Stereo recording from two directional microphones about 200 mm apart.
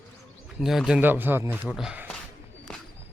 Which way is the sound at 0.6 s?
Centre (ahead or behind).